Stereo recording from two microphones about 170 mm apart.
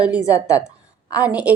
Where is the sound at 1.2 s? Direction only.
5° right (ahead or behind).